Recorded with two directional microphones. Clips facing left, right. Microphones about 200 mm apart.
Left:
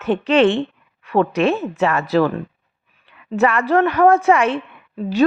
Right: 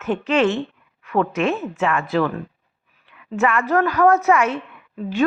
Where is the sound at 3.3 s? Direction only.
35° left (ahead or behind).